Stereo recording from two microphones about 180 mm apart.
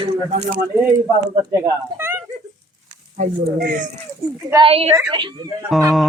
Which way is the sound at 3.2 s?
50° right (ahead or behind).